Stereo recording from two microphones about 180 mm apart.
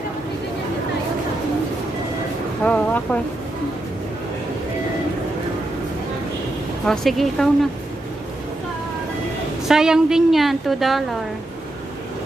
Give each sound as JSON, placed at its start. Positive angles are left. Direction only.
{"t": 2.6, "sound": "speech", "side_deg": 5}
{"t": 6.8, "sound": "a woman's voice", "side_deg": 0}
{"t": 9.6, "sound": "a woman's voice", "side_deg": -5}